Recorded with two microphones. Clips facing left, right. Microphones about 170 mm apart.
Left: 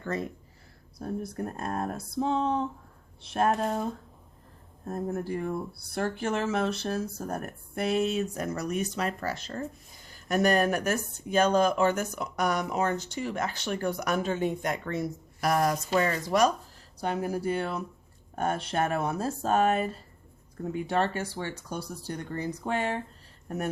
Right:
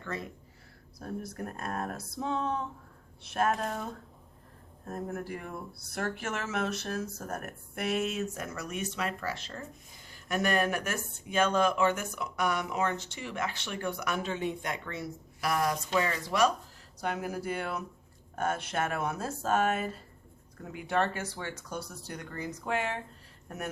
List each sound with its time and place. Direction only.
0.0 s speech: 40° left (ahead or behind)
4.9 s speech: 30° left (ahead or behind)
17.0 s speech: 30° left (ahead or behind)